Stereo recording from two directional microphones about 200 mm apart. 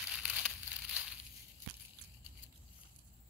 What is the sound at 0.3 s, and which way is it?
Crushing, 5° right (ahead or behind).